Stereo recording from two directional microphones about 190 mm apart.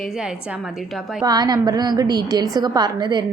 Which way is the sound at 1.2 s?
20° right (ahead or behind).